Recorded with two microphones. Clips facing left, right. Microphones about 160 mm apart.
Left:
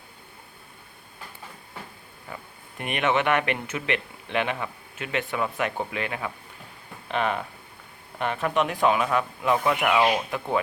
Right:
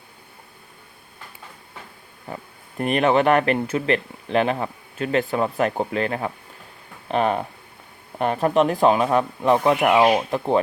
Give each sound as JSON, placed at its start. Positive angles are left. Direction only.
{"t": 2.2, "sound": "speech", "side_deg": -35}